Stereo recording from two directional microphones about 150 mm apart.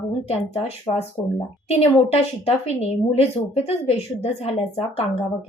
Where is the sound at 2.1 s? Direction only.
40° left (ahead or behind).